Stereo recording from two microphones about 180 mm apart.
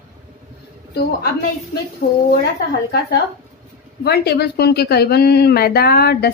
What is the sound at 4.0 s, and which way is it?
A woman's voice, 65° left (ahead or behind).